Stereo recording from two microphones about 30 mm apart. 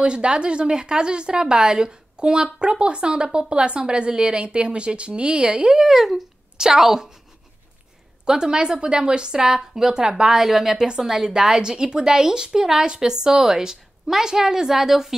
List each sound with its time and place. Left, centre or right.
0.0 s speech: right
5.8 s a woman's voice: centre
8.3 s a woman's voice: right
10.3 s a woman's voice: centre